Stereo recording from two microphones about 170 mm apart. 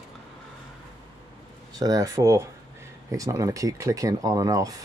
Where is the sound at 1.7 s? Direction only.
20° right (ahead or behind).